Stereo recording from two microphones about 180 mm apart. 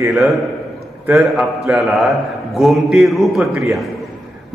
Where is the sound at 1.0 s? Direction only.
Centre (ahead or behind).